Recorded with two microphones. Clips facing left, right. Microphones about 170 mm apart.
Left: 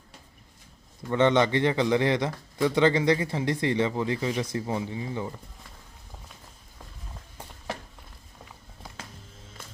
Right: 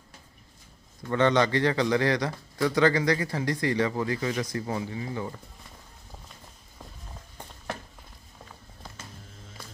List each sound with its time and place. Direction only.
1.0 s a man's voice: 20° left (ahead or behind)